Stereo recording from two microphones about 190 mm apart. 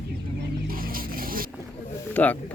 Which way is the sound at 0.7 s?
50° right (ahead or behind).